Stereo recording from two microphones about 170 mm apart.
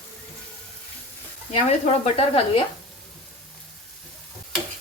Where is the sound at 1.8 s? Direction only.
35° left (ahead or behind).